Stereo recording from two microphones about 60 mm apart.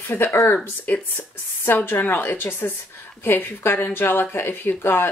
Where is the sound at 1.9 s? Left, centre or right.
Left.